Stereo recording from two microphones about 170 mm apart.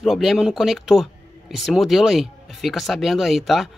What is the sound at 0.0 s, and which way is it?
Speech, centre (ahead or behind).